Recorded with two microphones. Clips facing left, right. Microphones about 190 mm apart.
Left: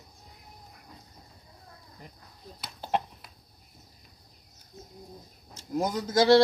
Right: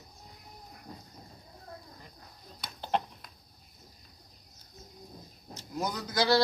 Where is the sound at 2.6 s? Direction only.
5° left (ahead or behind).